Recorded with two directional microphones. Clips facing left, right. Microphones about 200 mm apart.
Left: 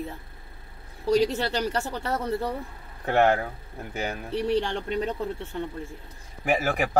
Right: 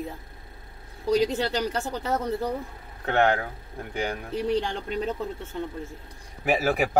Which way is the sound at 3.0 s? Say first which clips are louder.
Left 1 dB; 10° left (ahead or behind).